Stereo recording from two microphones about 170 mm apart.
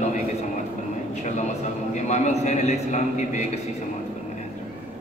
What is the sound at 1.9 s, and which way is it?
A man's voice, 45° left (ahead or behind).